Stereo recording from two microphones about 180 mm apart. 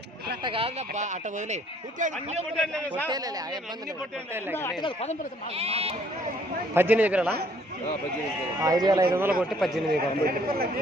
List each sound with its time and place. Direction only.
0.4 s speech: 30° right (ahead or behind)
3.1 s speech: 20° right (ahead or behind)
4.5 s speech: 15° left (ahead or behind)
4.8 s speech: 30° left (ahead or behind)
5.5 s speech: 35° right (ahead or behind)
6.7 s a man's voice: 10° right (ahead or behind)
8.6 s speech: 20° right (ahead or behind)
9.4 s a man's voice: centre (ahead or behind)
10.2 s speech: 55° right (ahead or behind)